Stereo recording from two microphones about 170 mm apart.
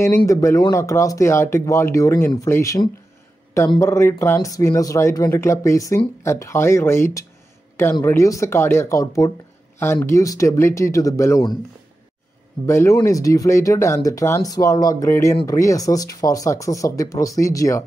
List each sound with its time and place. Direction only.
0.3 s speech: 20° left (ahead or behind)
12.6 s speech: 15° left (ahead or behind)